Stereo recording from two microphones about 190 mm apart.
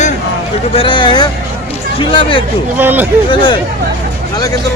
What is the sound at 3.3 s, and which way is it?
Speech, 25° left (ahead or behind).